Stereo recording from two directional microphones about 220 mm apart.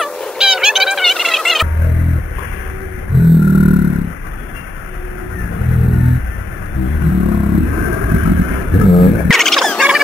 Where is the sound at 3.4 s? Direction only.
25° right (ahead or behind).